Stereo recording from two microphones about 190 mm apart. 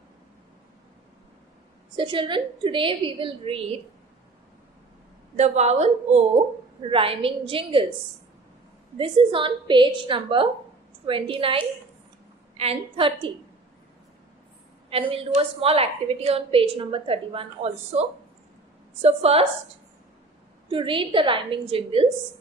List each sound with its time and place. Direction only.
2.0 s a woman's voice: 25° right (ahead or behind)
5.3 s a woman's voice: 35° right (ahead or behind)
8.9 s a woman's voice: 25° right (ahead or behind)
14.9 s a woman's voice: 30° right (ahead or behind)
20.7 s a woman's voice: 25° right (ahead or behind)